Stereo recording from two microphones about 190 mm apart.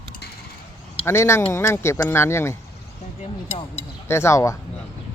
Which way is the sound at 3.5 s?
35° left (ahead or behind).